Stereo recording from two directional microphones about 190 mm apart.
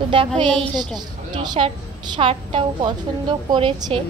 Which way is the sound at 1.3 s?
25° right (ahead or behind).